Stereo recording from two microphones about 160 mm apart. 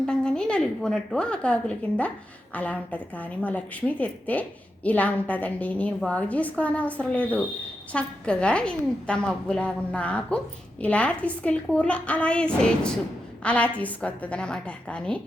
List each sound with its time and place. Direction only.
0.0 s a woman's voice: 5° left (ahead or behind)